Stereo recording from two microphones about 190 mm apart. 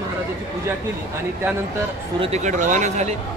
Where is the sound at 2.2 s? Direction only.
35° right (ahead or behind).